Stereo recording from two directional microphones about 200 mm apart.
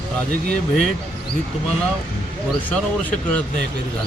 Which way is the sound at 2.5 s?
5° left (ahead or behind).